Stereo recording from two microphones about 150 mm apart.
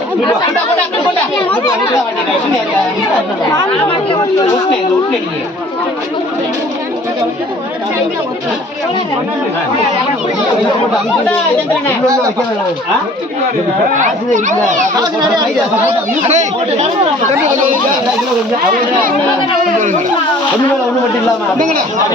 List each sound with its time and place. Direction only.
13.9 s speech: 55° right (ahead or behind)
16.2 s speech: 45° right (ahead or behind)